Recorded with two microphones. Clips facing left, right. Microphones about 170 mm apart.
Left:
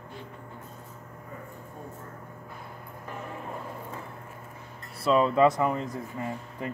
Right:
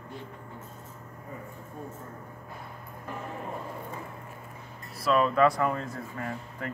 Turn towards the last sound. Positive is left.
turn(degrees=15)  # may be behind; listen again after turning